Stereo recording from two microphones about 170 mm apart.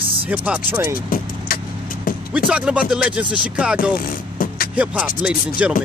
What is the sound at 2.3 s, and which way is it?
Speech, 5° right (ahead or behind).